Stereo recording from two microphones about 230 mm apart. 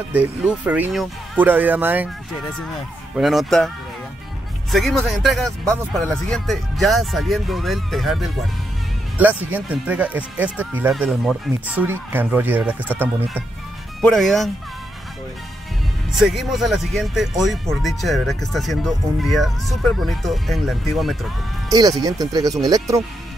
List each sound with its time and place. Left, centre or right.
0.1 s speech: centre
3.2 s speech: centre
16.2 s speech: centre
21.6 s speech: centre